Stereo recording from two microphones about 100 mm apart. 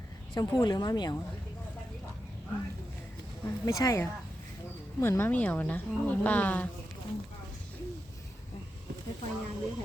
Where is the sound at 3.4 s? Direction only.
35° left (ahead or behind).